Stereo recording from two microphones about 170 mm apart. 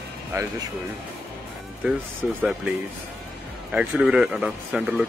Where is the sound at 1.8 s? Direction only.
10° right (ahead or behind).